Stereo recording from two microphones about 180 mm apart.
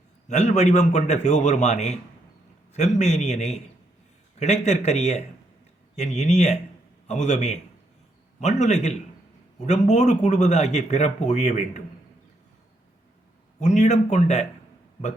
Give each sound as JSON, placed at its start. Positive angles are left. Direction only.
{"t": 0.3, "sound": "speech", "side_deg": 40}
{"t": 13.6, "sound": "speech", "side_deg": 40}